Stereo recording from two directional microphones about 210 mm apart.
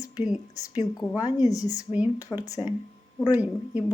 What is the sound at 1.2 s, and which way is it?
A woman's voice, 15° left (ahead or behind).